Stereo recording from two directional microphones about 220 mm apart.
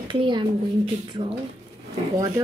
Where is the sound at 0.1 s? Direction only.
20° right (ahead or behind).